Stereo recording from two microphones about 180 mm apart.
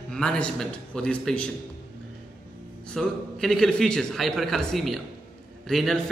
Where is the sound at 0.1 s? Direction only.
5° left (ahead or behind).